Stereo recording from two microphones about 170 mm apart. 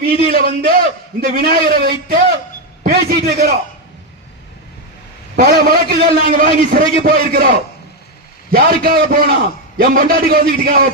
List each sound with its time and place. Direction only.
0.0 s a man's voice: 60° right (ahead or behind)
5.4 s a man's voice: 65° right (ahead or behind)
8.5 s a man's voice: 60° right (ahead or behind)